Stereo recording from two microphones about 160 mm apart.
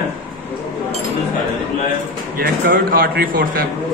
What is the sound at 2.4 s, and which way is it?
A man's voice, 65° right (ahead or behind).